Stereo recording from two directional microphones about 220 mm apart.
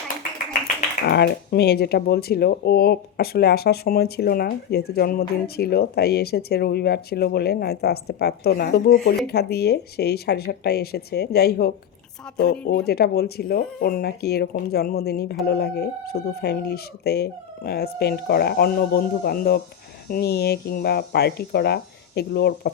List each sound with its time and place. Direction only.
1.0 s speech: 45° left (ahead or behind)